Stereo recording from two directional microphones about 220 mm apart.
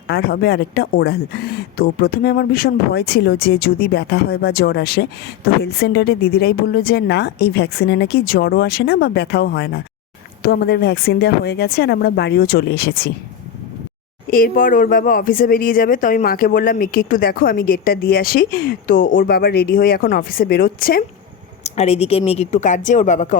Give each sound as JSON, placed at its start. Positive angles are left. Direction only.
{"t": 0.1, "sound": "a woman's voice", "side_deg": 45}
{"t": 14.3, "sound": "speech", "side_deg": 40}
{"t": 21.6, "sound": "speech", "side_deg": 30}